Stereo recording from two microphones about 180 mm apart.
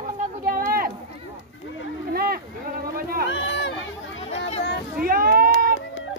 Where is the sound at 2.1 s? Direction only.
60° right (ahead or behind).